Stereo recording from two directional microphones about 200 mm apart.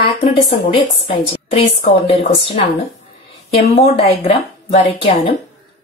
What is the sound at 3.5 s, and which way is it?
A woman's voice, 30° left (ahead or behind).